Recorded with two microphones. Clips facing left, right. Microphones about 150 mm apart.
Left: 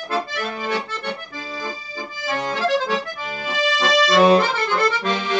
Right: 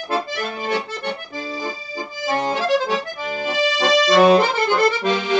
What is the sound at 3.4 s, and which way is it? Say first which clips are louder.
Accordion: right 2 dB; 35° right (ahead or behind).